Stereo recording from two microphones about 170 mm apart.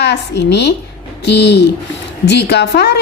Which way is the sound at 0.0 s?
85° left.